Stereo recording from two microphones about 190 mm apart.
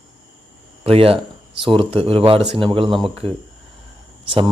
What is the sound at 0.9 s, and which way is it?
Speech, 30° right (ahead or behind).